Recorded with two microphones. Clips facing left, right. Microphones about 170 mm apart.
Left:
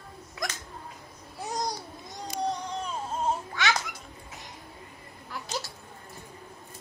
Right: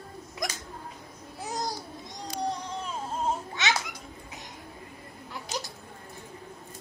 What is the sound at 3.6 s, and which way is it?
Children playing, 20° right (ahead or behind).